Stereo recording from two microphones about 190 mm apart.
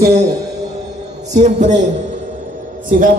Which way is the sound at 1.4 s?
35° right (ahead or behind).